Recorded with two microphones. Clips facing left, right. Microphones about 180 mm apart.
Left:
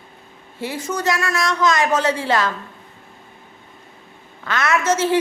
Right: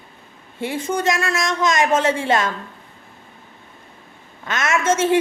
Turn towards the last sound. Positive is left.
turn(degrees=-25)  # may be behind; listen again after turning